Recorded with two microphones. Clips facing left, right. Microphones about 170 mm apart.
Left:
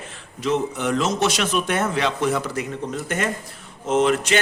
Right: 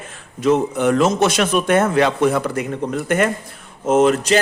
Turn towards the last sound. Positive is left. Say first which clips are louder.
# right 5 dB
turn(degrees=-40)  # may be behind; listen again after turning